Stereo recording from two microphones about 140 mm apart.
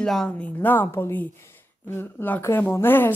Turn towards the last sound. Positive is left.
turn(degrees=15)  # may be behind; listen again after turning